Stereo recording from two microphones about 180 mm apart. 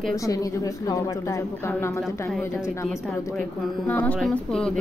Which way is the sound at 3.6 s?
Centre (ahead or behind).